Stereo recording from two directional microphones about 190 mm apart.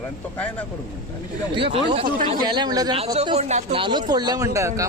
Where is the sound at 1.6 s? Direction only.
30° right (ahead or behind).